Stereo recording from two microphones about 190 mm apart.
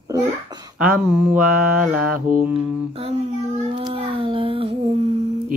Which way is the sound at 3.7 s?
25° right (ahead or behind).